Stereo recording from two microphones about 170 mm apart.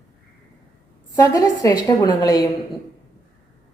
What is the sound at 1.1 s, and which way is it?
A woman's voice, 20° left (ahead or behind).